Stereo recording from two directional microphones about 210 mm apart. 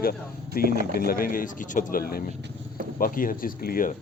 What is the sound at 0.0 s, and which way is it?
A man's voice, 45° left (ahead or behind).